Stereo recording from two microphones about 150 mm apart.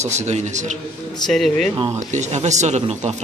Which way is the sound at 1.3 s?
5° left (ahead or behind).